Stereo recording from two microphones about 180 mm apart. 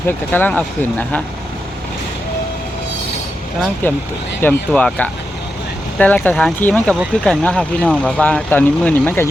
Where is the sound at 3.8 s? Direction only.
10° left (ahead or behind).